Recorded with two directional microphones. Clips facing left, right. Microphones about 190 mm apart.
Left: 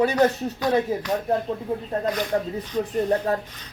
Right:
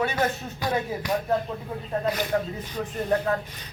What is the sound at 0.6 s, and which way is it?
Speech, 10° right (ahead or behind).